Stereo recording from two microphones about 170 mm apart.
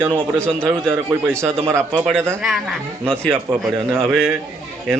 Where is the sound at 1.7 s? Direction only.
15° right (ahead or behind).